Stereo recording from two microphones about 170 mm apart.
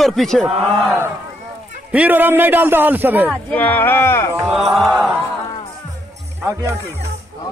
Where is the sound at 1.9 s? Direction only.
10° right (ahead or behind).